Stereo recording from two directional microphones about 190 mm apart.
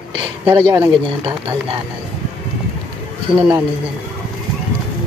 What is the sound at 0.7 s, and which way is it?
Speech, 25° right (ahead or behind).